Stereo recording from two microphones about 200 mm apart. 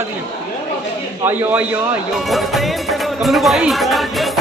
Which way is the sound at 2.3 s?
Centre (ahead or behind).